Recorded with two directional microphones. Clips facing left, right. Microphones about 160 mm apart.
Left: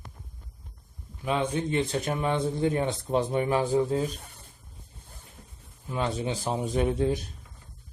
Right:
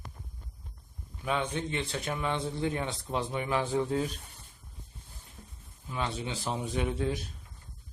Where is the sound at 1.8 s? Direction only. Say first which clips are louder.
Left 6 dB; 45° left (ahead or behind).